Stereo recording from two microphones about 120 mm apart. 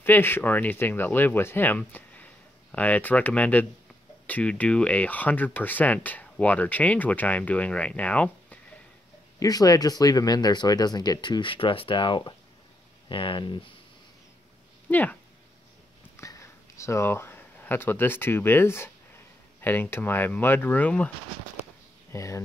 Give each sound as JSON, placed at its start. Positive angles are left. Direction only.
{"t": 0.0, "sound": "speech", "side_deg": 20}
{"t": 9.4, "sound": "speech", "side_deg": 30}
{"t": 14.9, "sound": "speech", "side_deg": 15}
{"t": 16.2, "sound": "speech", "side_deg": 25}
{"t": 22.1, "sound": "speech", "side_deg": 25}